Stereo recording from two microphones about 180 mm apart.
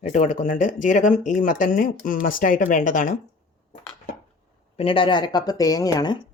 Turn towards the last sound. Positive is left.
turn(degrees=20)  # may be behind; listen again after turning